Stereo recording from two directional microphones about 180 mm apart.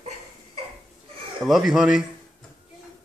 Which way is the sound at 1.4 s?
Centre (ahead or behind).